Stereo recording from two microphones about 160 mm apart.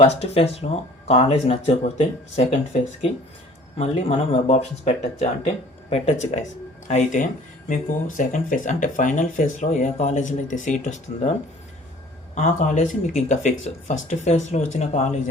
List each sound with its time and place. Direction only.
0.0 s speech: 40° left (ahead or behind)
3.8 s speech: 40° left (ahead or behind)
12.3 s speech: 50° left (ahead or behind)